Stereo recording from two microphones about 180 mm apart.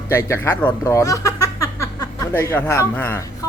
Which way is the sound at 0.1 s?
15° left (ahead or behind).